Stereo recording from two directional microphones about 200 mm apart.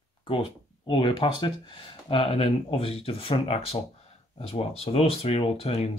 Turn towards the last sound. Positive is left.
turn(degrees=30)  # may be behind; listen again after turning